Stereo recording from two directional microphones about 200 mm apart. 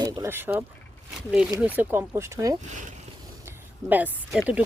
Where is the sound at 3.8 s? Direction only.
10° right (ahead or behind).